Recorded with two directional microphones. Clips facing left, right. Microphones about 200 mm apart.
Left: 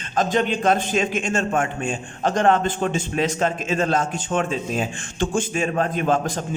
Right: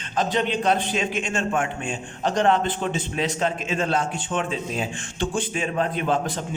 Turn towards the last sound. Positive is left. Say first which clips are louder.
# left 2 dB
turn(degrees=45)  # may be behind; listen again after turning